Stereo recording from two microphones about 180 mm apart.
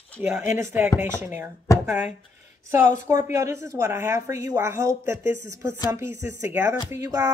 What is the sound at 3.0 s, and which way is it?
A woman's voice, 15° right (ahead or behind).